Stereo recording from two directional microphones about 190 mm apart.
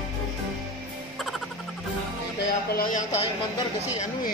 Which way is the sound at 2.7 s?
40° left (ahead or behind).